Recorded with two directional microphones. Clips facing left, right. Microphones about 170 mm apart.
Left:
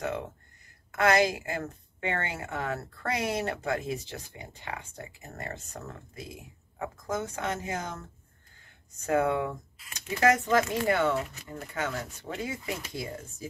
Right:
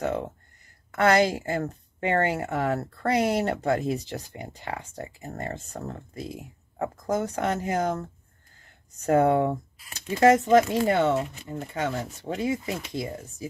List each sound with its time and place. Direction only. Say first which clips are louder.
0.9 s a woman's voice: right 3 dB; 35° right (ahead or behind)
9.0 s a woman's voice: right 6 dB; 35° right (ahead or behind)
10.1 s speech: right 6 dB; 25° right (ahead or behind)